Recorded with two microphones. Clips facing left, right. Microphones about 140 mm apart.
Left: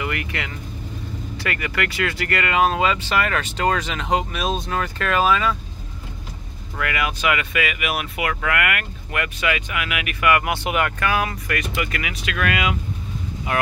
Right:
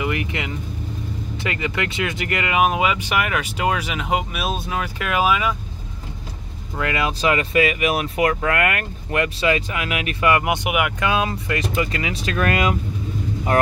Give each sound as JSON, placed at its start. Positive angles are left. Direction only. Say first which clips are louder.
{"t": 0.0, "sound": "speech", "louder": "right 3 dB", "side_deg": -20}
{"t": 6.8, "sound": "speech", "louder": "right 2 dB", "side_deg": -25}
{"t": 11.1, "sound": "speech", "louder": "right 1 dB", "side_deg": -25}